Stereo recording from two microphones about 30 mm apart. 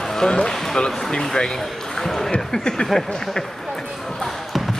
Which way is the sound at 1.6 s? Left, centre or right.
Centre.